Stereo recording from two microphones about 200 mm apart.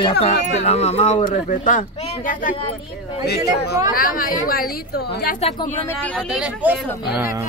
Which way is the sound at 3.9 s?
45° left (ahead or behind).